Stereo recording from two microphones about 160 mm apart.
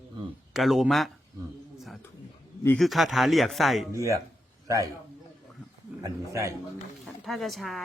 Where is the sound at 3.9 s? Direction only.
20° right (ahead or behind).